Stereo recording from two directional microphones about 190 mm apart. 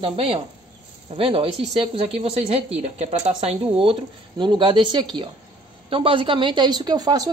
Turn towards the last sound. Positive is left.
turn(degrees=-20)  # may be behind; listen again after turning